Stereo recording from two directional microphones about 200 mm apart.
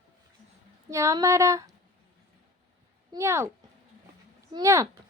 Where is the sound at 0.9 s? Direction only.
15° right (ahead or behind).